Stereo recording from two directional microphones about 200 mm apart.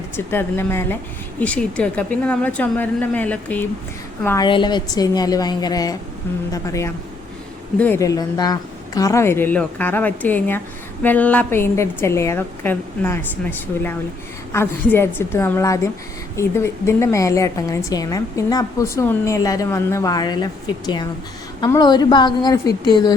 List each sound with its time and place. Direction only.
0.3 s a woman's voice: 10° left (ahead or behind)
4.4 s a woman's voice: 25° left (ahead or behind)